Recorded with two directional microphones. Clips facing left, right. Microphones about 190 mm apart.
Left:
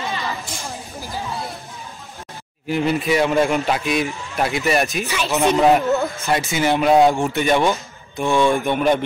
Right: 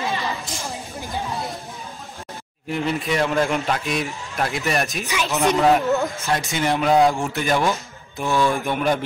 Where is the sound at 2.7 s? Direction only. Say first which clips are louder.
Left 4 dB; 5° left (ahead or behind).